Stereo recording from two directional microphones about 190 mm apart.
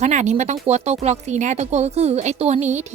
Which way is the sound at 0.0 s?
35° right (ahead or behind).